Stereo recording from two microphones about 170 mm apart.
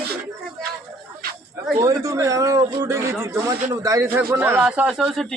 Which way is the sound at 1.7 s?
20° right (ahead or behind).